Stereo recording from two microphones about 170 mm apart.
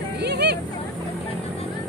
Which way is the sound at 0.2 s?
80° right.